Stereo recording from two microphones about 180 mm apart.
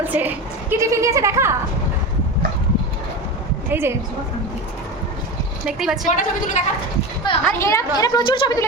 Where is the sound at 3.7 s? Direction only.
10° right (ahead or behind).